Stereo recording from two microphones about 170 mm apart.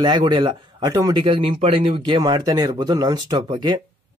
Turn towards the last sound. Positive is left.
turn(degrees=-25)  # may be behind; listen again after turning